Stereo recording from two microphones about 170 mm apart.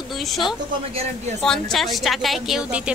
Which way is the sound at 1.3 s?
5° left (ahead or behind).